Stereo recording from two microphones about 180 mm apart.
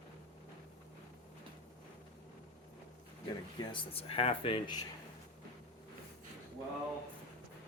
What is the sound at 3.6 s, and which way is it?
Speech, 30° left (ahead or behind).